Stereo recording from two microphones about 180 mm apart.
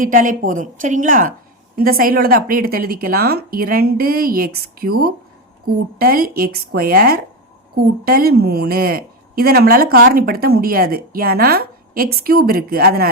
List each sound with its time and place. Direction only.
0.0 s a woman's voice: 50° right (ahead or behind)